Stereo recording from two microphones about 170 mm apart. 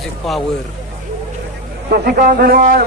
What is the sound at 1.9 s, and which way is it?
Speech, 55° right (ahead or behind).